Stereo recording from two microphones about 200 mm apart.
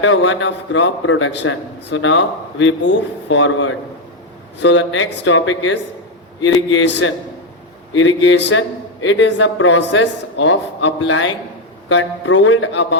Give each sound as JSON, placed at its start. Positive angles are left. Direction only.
{"t": 0.0, "sound": "a man's voice", "side_deg": 70}